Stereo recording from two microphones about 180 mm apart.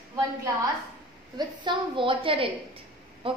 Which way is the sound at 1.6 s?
25° right (ahead or behind).